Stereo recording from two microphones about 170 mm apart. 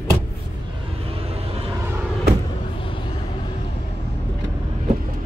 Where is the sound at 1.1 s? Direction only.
35° right (ahead or behind).